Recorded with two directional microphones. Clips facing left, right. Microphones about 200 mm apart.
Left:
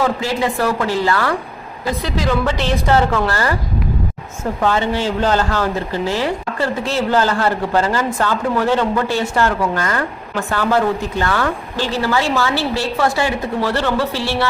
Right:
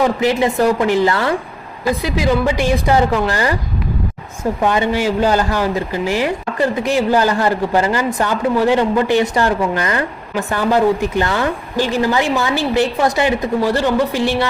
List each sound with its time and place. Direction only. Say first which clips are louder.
0.0 s speech: right 3 dB; 20° right (ahead or behind)
1.9 s a woman's voice: right 3 dB; 10° right (ahead or behind)
4.6 s a woman's voice: right 1 dB; 15° right (ahead or behind)